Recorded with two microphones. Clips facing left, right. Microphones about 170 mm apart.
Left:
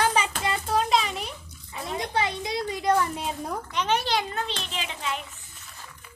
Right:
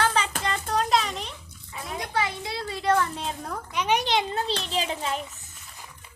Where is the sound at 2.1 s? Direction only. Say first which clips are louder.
Left 1 dB; 20° left (ahead or behind).